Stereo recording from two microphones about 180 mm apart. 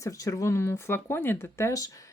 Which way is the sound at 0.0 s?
20° left (ahead or behind).